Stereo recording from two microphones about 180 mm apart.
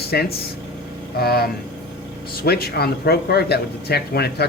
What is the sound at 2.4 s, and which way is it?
Speech, 60° left (ahead or behind).